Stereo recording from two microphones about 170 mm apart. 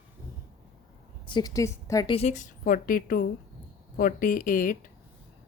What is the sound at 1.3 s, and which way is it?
Speech, 25° left (ahead or behind).